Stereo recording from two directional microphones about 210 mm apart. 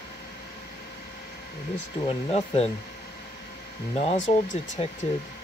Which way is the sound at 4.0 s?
35° left (ahead or behind).